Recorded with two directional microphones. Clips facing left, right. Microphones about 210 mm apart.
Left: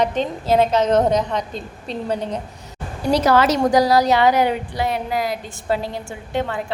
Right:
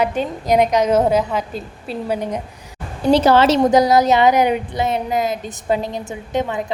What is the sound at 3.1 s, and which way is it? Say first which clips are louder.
A woman's voice: right 3 dB; 25° right (ahead or behind).